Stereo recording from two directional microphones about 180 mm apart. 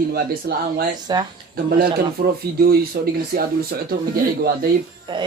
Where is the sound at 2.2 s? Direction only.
55° right (ahead or behind).